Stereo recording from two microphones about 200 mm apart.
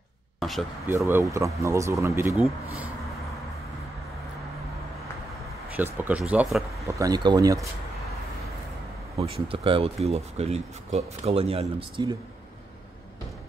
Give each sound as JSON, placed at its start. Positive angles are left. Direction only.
{"t": 0.4, "sound": "a sound", "side_deg": 0}
{"t": 0.8, "sound": "speech", "side_deg": -10}
{"t": 5.8, "sound": "speech", "side_deg": -5}
{"t": 6.9, "sound": "speech", "side_deg": -20}
{"t": 9.1, "sound": "speech", "side_deg": -30}